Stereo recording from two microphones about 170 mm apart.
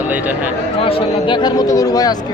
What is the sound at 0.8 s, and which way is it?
Speech, 35° left (ahead or behind).